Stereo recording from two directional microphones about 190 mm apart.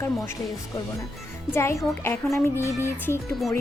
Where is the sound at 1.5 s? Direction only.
15° left (ahead or behind).